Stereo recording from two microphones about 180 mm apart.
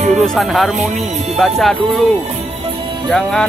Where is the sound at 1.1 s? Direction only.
40° right (ahead or behind).